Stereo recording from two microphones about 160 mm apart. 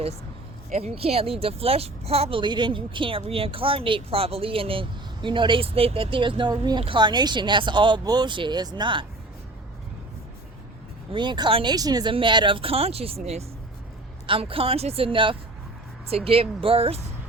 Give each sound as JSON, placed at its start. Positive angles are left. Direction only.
{"t": 0.7, "sound": "speech", "side_deg": -40}
{"t": 11.1, "sound": "speech", "side_deg": -30}